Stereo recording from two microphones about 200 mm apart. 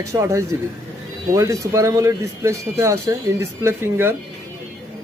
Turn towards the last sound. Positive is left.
turn(degrees=-10)  # may be behind; listen again after turning